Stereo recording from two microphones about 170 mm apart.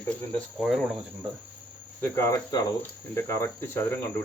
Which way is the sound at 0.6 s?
Centre (ahead or behind).